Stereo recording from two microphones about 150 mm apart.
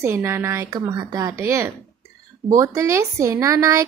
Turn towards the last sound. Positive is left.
turn(degrees=-20)  # may be behind; listen again after turning